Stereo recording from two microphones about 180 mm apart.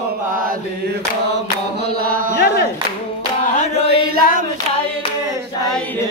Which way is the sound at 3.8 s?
55° right (ahead or behind).